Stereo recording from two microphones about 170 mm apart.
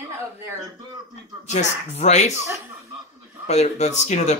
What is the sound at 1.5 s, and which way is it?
Speech, 40° left (ahead or behind).